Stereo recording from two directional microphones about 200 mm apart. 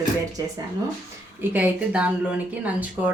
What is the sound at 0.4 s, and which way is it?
A woman's voice, 20° right (ahead or behind).